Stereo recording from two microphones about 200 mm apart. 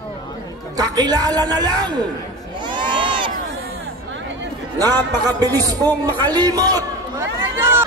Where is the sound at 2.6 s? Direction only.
25° right (ahead or behind).